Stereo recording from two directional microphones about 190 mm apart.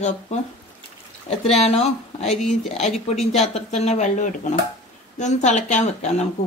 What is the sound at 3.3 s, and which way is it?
A woman's voice, 35° left (ahead or behind).